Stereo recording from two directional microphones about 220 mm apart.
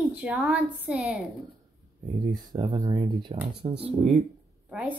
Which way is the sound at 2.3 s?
20° right (ahead or behind).